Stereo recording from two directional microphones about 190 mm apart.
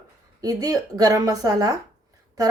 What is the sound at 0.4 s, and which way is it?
Speech, 20° right (ahead or behind).